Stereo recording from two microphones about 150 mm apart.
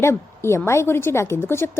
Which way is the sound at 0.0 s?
15° left (ahead or behind).